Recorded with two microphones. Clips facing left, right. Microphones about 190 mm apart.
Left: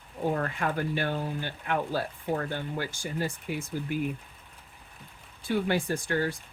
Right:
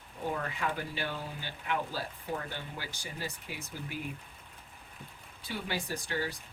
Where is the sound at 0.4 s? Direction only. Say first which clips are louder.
Left 5 dB; 50° left (ahead or behind).